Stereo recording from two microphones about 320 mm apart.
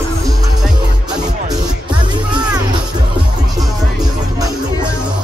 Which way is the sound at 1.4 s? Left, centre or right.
Centre.